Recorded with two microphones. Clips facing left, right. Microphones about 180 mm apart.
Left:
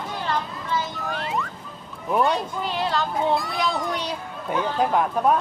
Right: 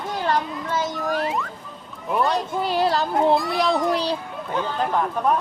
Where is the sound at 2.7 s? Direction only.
35° right (ahead or behind).